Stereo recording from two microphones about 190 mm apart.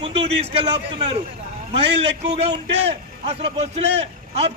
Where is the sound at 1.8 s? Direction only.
65° right (ahead or behind).